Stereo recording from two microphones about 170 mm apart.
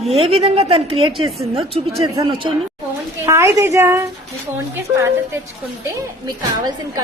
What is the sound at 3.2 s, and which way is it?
Speech, 15° right (ahead or behind).